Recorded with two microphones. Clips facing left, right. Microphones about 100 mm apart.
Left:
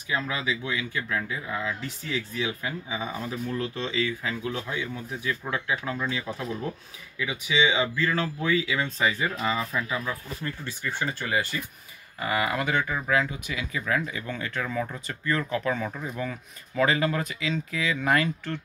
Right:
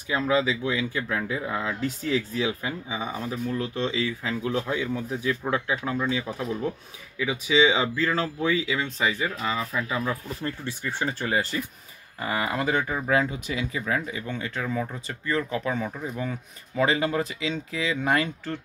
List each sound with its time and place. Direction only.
0.1 s speech: 30° right (ahead or behind)
2.6 s speech: 20° right (ahead or behind)
7.2 s speech: 30° right (ahead or behind)
9.2 s speech: centre (ahead or behind)
9.8 s speech: 30° right (ahead or behind)